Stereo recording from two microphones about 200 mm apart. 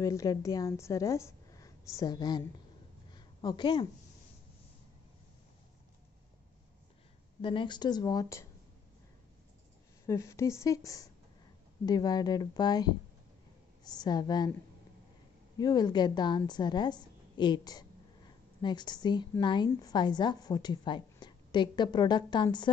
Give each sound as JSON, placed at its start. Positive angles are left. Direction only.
{"t": 0.0, "sound": "a woman's voice", "side_deg": 15}
{"t": 3.1, "sound": "a sound", "side_deg": 20}
{"t": 7.4, "sound": "a woman's voice", "side_deg": 25}
{"t": 10.0, "sound": "a woman's voice", "side_deg": 15}
{"t": 15.5, "sound": "a woman's voice", "side_deg": 20}